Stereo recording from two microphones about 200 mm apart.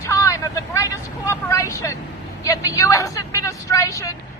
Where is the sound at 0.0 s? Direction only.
15° left (ahead or behind).